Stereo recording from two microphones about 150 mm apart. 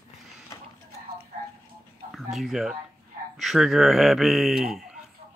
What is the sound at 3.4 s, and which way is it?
Speech, centre (ahead or behind).